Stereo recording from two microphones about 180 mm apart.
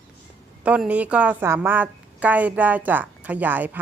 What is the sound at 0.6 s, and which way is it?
A woman's voice, 5° right (ahead or behind).